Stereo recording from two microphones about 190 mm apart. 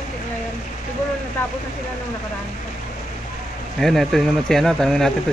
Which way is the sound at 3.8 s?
Centre (ahead or behind).